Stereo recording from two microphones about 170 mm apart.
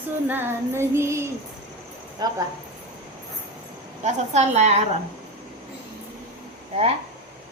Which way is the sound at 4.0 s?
40° right (ahead or behind).